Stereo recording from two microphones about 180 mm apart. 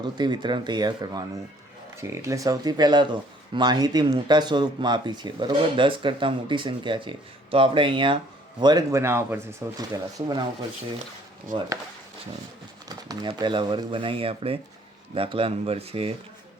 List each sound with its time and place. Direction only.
0.0 s speech: 25° right (ahead or behind)
12.9 s speech: 25° right (ahead or behind)